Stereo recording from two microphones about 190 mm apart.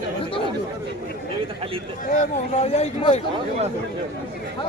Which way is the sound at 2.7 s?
35° left (ahead or behind).